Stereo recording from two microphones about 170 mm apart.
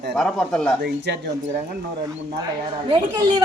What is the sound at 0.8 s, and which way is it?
Speech, 75° right (ahead or behind).